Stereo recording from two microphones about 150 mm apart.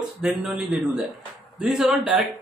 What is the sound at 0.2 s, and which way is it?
A man's voice, 5° right (ahead or behind).